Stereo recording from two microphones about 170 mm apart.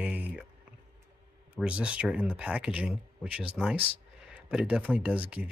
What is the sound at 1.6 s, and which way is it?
Speech, 5° right (ahead or behind).